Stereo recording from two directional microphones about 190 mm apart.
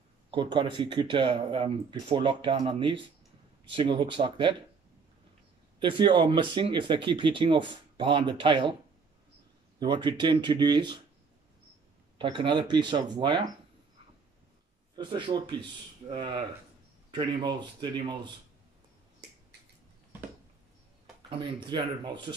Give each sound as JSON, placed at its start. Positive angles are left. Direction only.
{"t": 0.3, "sound": "speech", "side_deg": -25}
{"t": 5.8, "sound": "speech", "side_deg": -25}
{"t": 9.8, "sound": "speech", "side_deg": -25}
{"t": 12.2, "sound": "speech", "side_deg": -25}
{"t": 15.0, "sound": "speech", "side_deg": -25}
{"t": 21.3, "sound": "speech", "side_deg": -25}